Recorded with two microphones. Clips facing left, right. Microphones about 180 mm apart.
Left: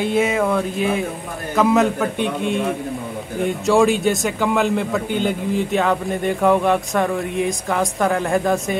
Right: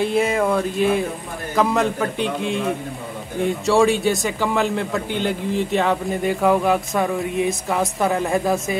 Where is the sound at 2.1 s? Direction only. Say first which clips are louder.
Left 2 dB; 55° left (ahead or behind).